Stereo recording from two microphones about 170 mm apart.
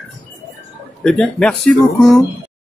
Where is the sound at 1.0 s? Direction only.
5° left (ahead or behind).